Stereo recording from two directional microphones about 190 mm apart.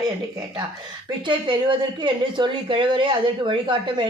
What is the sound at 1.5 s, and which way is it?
Speech, 25° right (ahead or behind).